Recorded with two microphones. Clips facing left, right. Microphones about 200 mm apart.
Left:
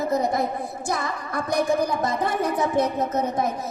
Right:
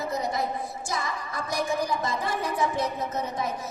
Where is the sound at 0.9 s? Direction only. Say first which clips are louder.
Left 5 dB; 60° left (ahead or behind).